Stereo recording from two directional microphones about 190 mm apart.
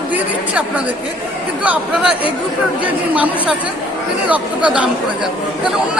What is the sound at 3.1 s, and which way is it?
A woman's voice, 5° right (ahead or behind).